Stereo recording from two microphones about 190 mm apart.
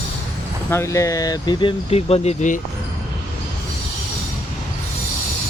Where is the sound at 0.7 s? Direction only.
15° left (ahead or behind); by 2.6 s 40° left (ahead or behind).